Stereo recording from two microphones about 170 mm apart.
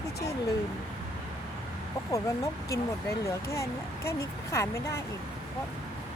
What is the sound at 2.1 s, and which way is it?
Speech, 20° left (ahead or behind).